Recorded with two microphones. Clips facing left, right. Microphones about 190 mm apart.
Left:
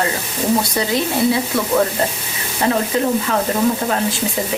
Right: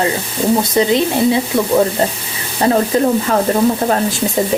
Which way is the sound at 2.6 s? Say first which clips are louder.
Right 4 dB; 35° right (ahead or behind).